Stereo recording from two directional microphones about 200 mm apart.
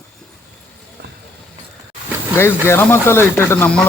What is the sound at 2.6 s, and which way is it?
Speech, 10° left (ahead or behind).